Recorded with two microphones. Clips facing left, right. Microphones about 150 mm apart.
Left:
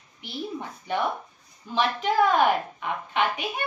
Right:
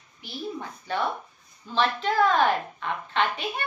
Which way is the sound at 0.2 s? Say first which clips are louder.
Left 1 dB; 15° left (ahead or behind).